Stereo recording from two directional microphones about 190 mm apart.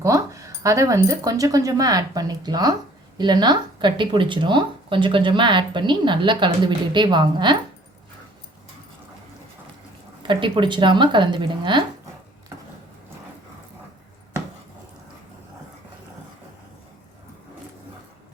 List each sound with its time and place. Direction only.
0.0 s speech: 15° right (ahead or behind)
10.2 s speech: 25° right (ahead or behind)